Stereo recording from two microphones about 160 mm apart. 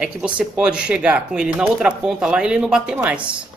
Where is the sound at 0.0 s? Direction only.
5° right (ahead or behind).